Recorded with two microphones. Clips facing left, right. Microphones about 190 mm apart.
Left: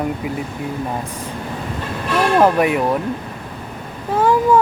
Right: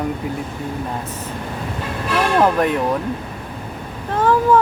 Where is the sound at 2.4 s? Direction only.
10° left (ahead or behind).